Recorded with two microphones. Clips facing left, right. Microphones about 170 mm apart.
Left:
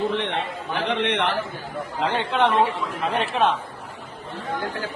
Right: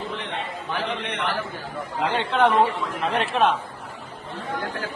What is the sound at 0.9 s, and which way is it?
Speech, 70° left (ahead or behind).